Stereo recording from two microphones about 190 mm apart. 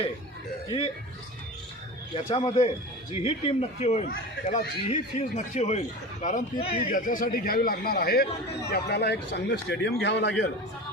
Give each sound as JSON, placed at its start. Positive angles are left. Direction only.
{"t": 2.3, "sound": "a man's voice", "side_deg": 30}
{"t": 6.9, "sound": "a man's voice", "side_deg": 45}